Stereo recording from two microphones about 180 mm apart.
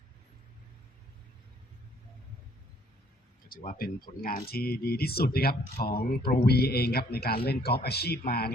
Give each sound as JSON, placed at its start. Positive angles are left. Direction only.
{"t": 3.5, "sound": "a man's voice", "side_deg": 50}